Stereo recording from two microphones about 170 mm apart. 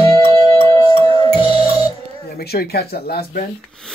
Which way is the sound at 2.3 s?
65° left (ahead or behind).